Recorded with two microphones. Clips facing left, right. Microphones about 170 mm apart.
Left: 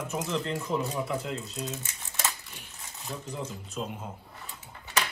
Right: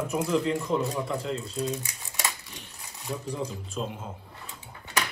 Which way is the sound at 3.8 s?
Centre (ahead or behind).